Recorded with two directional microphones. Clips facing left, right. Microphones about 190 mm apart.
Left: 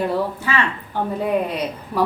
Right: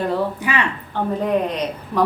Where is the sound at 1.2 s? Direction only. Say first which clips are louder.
Even; 10° left (ahead or behind).